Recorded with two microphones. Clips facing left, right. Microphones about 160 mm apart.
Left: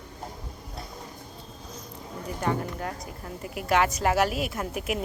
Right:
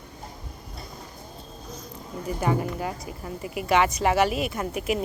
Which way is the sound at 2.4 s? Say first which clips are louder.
Right 3 dB; 5° right (ahead or behind).